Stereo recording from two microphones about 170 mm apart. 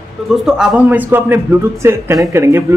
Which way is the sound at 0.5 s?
5° right (ahead or behind).